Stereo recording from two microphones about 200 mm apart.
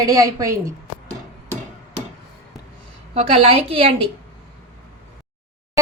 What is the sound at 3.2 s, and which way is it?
Speech, 30° right (ahead or behind).